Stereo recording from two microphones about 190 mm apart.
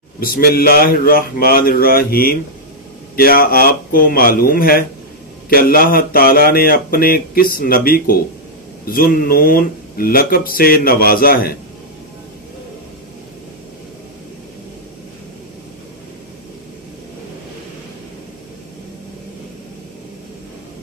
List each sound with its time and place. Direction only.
0.2 s speech: 55° left (ahead or behind)